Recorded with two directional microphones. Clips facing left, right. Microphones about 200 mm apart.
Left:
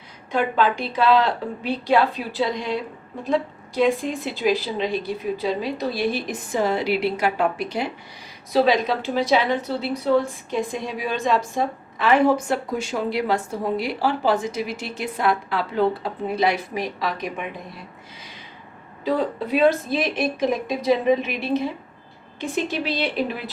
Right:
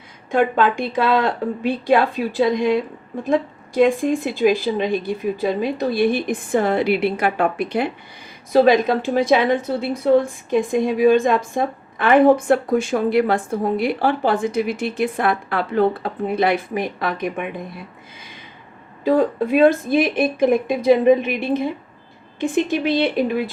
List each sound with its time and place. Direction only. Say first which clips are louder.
0.3 s a woman's voice: right 4 dB; 50° right (ahead or behind)
19.0 s a woman's voice: right 6 dB; 50° right (ahead or behind)